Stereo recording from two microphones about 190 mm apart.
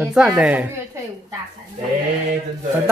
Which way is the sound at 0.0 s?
5° right (ahead or behind).